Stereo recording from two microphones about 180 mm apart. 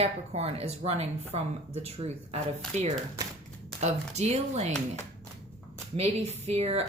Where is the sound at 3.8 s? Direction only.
40° right (ahead or behind).